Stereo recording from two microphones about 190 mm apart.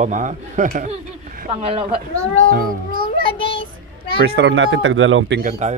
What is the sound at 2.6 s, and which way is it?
Speech, 50° right (ahead or behind).